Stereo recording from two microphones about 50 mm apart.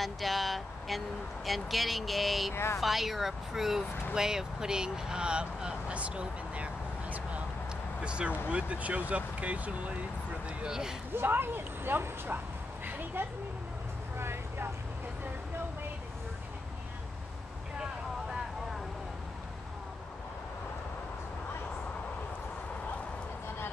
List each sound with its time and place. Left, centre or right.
0.0 s speech: centre
2.5 s speech: left
2.8 s speech: centre; by 9.9 s right
10.6 s speech: centre
11.1 s speech: right
14.1 s vehicle: right